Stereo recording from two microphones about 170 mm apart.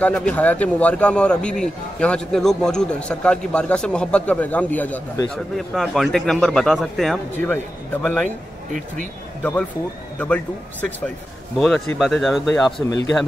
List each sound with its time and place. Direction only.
0.0 s a man's voice: 5° left (ahead or behind)
8.7 s speech: 50° right (ahead or behind)
9.4 s a man's voice: 10° left (ahead or behind)